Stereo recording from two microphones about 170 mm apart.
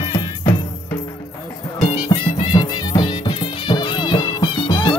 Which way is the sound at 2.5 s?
25° left (ahead or behind).